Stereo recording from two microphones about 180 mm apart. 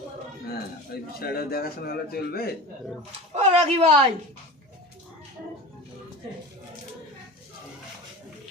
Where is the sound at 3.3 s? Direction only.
40° right (ahead or behind).